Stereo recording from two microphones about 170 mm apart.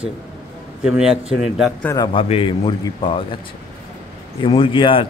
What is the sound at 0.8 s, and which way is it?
Speech, 5° right (ahead or behind).